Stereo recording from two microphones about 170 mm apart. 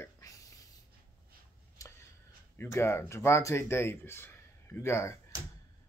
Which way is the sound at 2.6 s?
15° left (ahead or behind).